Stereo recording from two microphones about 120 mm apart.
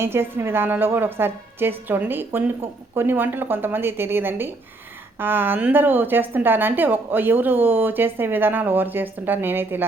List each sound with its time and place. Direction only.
0.0 s a woman's voice: 20° right (ahead or behind)